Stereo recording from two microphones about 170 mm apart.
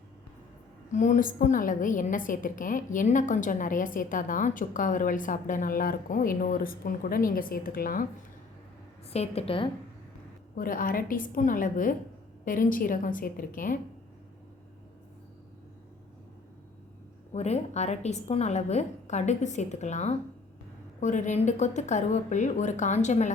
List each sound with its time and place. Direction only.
0.9 s a woman's voice: 45° left (ahead or behind)
9.0 s a woman's voice: 35° left (ahead or behind)
10.5 s a woman's voice: 55° left (ahead or behind)
17.3 s a woman's voice: 40° left (ahead or behind)